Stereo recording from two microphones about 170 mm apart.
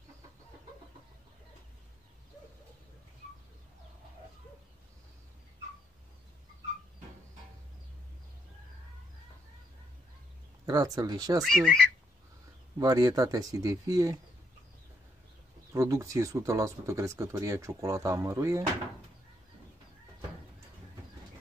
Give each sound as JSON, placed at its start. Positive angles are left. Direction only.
{"t": 10.6, "sound": "speech", "side_deg": -20}
{"t": 11.4, "sound": "speech", "side_deg": 5}
{"t": 12.7, "sound": "speech", "side_deg": -20}
{"t": 15.7, "sound": "speech", "side_deg": -20}